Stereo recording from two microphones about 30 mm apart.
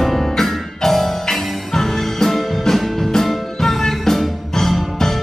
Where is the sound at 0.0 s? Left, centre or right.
Centre.